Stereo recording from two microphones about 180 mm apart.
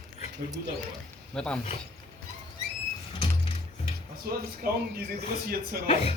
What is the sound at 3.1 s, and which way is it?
Music, 30° left (ahead or behind).